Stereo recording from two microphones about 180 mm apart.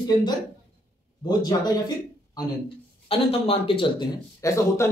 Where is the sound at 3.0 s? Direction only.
30° left (ahead or behind).